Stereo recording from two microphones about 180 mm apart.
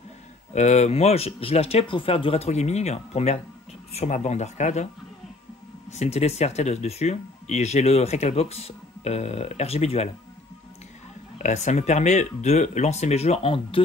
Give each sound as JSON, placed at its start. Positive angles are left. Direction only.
{"t": 0.5, "sound": "speech", "side_deg": 40}
{"t": 5.9, "sound": "speech", "side_deg": 35}
{"t": 11.3, "sound": "speech", "side_deg": 40}